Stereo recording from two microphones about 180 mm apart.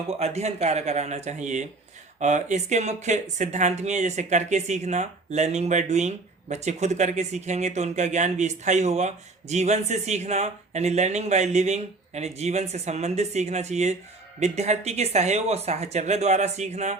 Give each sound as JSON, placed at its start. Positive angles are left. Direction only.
{"t": 0.1, "sound": "speech", "side_deg": -35}